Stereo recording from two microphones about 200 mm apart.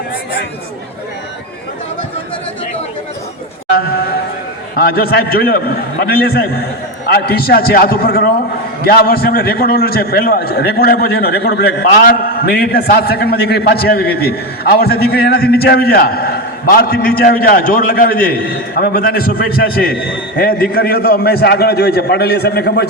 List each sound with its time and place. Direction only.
4.8 s a man's voice: 50° left (ahead or behind)